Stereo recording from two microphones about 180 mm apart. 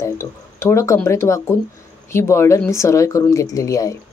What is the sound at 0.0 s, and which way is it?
Speech, 15° left (ahead or behind).